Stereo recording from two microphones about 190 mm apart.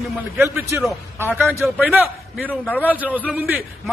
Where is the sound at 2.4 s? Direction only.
10° left (ahead or behind).